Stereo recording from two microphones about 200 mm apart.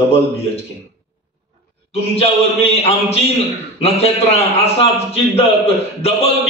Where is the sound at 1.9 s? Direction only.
30° left (ahead or behind).